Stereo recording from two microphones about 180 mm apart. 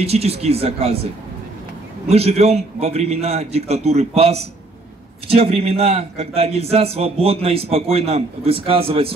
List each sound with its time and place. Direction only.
0.0 s a man's voice: 35° right (ahead or behind)
2.0 s a man's voice: 35° right (ahead or behind)